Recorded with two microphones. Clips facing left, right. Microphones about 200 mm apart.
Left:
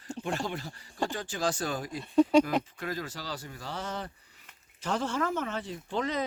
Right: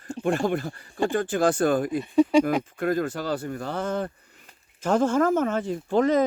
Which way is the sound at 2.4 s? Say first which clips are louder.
Right 5 dB; 55° right (ahead or behind).